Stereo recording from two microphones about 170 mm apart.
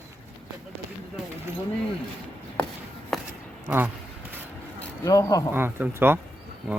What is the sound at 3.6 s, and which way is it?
Speech, 10° right (ahead or behind).